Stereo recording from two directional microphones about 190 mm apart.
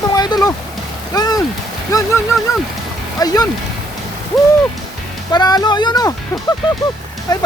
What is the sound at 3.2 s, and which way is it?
Speech, 20° left (ahead or behind).